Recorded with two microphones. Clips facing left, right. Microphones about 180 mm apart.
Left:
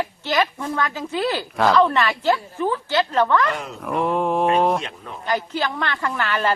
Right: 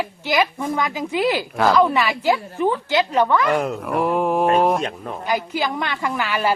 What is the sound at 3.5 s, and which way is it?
Speech, 55° right (ahead or behind).